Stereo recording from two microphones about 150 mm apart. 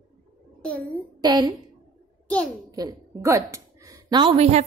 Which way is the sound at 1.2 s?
30° right (ahead or behind).